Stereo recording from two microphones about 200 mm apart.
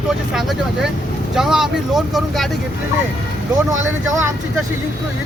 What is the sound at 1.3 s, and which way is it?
Speech, centre (ahead or behind).